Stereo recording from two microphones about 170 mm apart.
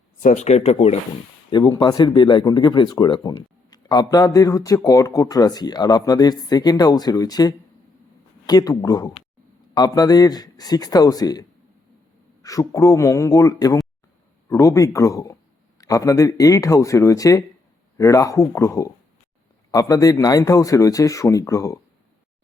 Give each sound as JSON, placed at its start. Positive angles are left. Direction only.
{"t": 0.2, "sound": "speech", "side_deg": 45}
{"t": 1.5, "sound": "speech", "side_deg": 25}